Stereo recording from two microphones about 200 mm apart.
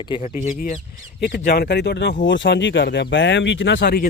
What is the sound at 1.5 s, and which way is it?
Speech, 55° left (ahead or behind).